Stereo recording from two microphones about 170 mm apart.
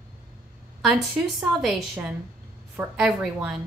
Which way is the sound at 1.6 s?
Centre (ahead or behind).